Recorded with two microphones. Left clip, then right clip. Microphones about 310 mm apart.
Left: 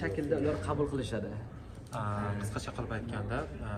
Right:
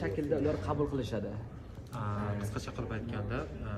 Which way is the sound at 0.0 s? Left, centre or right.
Left.